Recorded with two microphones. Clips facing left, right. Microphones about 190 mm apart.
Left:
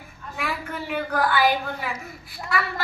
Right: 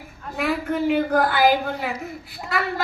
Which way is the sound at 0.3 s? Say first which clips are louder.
Right 8 dB; 50° right (ahead or behind).